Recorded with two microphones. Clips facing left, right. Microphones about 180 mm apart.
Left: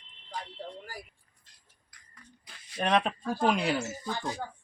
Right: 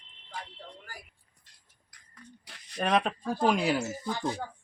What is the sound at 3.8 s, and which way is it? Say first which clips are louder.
Speech: right 2 dB; 15° right (ahead or behind).